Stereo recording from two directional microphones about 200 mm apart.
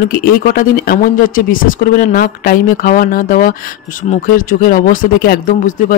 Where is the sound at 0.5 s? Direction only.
45° left (ahead or behind).